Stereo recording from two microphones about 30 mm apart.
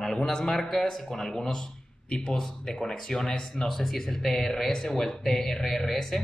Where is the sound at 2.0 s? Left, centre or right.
Left.